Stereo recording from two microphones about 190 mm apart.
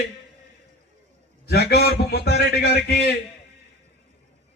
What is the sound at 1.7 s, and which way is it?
Speech, 55° left (ahead or behind).